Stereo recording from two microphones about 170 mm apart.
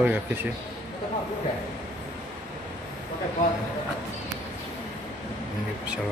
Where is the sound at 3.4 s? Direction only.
50° left (ahead or behind).